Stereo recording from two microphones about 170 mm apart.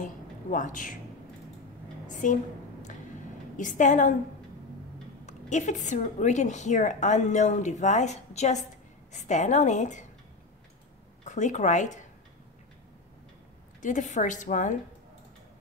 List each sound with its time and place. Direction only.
0.0 s a sound: 50° left (ahead or behind)
2.0 s a sound: 50° left (ahead or behind)
3.5 s a woman's voice: 50° left (ahead or behind)
5.2 s a woman's voice: 45° left (ahead or behind)
11.2 s a woman's voice: 45° left (ahead or behind)
13.7 s a woman's voice: 45° left (ahead or behind)